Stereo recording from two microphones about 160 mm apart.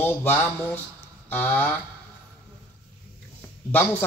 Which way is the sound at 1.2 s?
10° left (ahead or behind).